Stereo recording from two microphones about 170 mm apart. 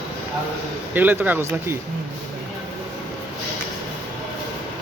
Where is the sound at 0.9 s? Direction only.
10° right (ahead or behind).